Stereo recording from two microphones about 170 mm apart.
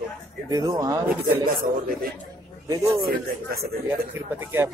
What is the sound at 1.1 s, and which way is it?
Speech, 60° right (ahead or behind).